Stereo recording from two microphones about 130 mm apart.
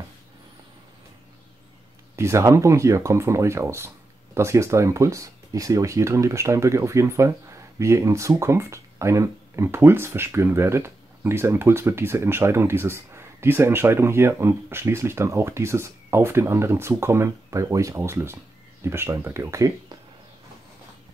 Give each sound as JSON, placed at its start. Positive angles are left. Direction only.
{"t": 2.1, "sound": "speech", "side_deg": -20}